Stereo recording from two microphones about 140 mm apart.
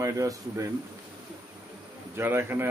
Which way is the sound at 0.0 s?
20° right (ahead or behind).